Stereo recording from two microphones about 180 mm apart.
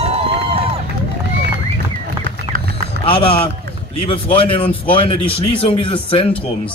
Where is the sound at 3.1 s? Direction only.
30° left (ahead or behind).